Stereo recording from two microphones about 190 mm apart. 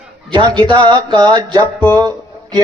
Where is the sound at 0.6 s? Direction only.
25° right (ahead or behind).